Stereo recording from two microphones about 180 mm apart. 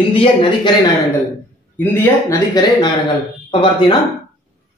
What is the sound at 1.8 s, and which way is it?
Speech, 15° left (ahead or behind).